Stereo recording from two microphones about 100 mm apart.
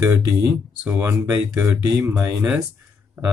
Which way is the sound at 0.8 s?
25° right (ahead or behind).